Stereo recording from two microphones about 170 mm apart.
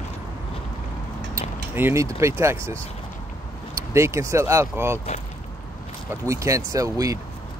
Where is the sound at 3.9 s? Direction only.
15° right (ahead or behind).